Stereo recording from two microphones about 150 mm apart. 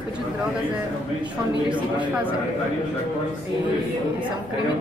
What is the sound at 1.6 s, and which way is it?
Speech, 10° right (ahead or behind).